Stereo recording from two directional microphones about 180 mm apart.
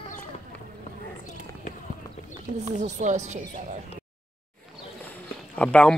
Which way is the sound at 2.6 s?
40° right (ahead or behind).